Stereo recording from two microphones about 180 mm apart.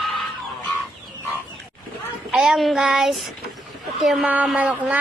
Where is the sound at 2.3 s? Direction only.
Centre (ahead or behind).